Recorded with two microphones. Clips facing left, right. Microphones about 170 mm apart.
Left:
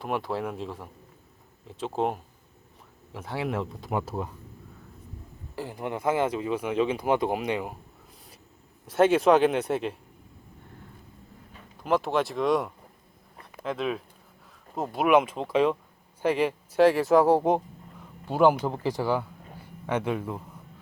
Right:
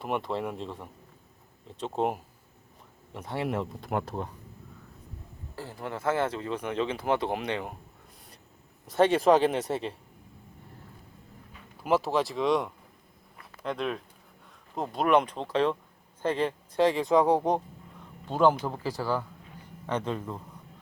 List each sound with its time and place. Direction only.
0.0 s speech: centre (ahead or behind)
5.5 s speech: 15° left (ahead or behind)
8.9 s speech: centre (ahead or behind)
11.8 s speech: 5° right (ahead or behind)
13.4 s a sound: centre (ahead or behind)
14.8 s speech: 5° left (ahead or behind)